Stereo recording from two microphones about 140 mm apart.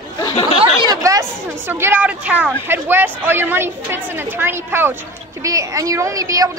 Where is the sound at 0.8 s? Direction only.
25° right (ahead or behind).